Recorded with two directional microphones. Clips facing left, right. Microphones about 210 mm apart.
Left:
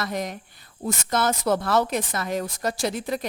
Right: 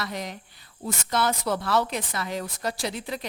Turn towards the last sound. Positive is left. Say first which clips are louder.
# left 5 dB
turn(degrees=45)  # may be behind; listen again after turning